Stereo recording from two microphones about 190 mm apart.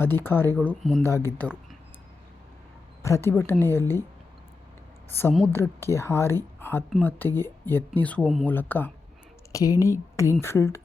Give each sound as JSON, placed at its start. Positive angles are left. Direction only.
{"t": 0.0, "sound": "a woman's voice", "side_deg": 10}
{"t": 3.0, "sound": "a woman's voice", "side_deg": 15}
{"t": 5.0, "sound": "a woman's voice", "side_deg": 10}